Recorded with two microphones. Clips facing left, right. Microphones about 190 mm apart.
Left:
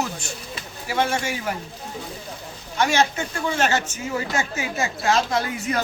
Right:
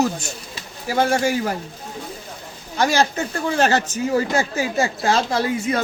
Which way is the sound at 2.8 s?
35° right (ahead or behind).